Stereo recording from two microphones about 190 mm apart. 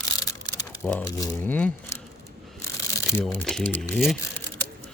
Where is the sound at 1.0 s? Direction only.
20° left (ahead or behind).